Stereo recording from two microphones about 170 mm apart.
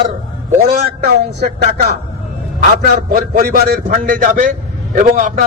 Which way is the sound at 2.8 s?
55° right (ahead or behind).